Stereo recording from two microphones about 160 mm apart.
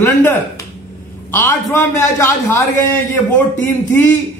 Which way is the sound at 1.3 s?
15° left (ahead or behind).